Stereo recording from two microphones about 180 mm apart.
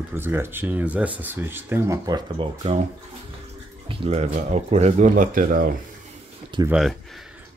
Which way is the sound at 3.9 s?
35° right (ahead or behind).